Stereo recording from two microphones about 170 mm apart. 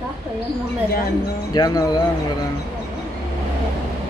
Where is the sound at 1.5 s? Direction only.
25° left (ahead or behind).